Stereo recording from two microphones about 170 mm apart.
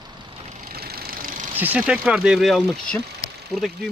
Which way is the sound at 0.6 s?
65° right (ahead or behind).